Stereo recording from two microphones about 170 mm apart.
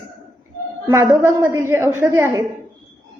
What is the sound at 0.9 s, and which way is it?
A woman's voice, 15° right (ahead or behind).